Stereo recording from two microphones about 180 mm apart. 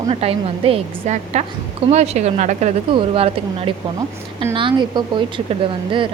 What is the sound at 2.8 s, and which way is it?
Speech, 30° right (ahead or behind).